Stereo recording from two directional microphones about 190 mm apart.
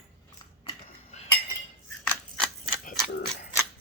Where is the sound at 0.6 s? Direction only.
35° left (ahead or behind).